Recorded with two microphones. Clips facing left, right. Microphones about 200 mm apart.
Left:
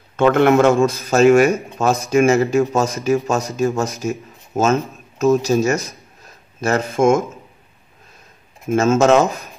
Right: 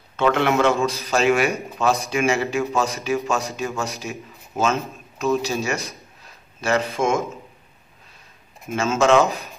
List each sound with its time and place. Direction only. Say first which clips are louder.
0.1 s a man's voice: left 6 dB; 50° left (ahead or behind)
8.6 s a man's voice: left 5 dB; 45° left (ahead or behind)